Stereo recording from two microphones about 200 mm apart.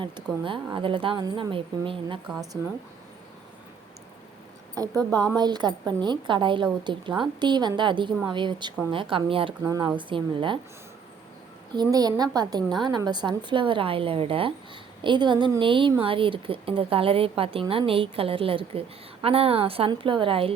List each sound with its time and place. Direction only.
0.4 s a woman's voice: 25° right (ahead or behind)
2.3 s speech: centre (ahead or behind)
4.7 s a woman's voice: 20° right (ahead or behind)
9.6 s a woman's voice: 15° right (ahead or behind)
11.7 s a woman's voice: 20° right (ahead or behind)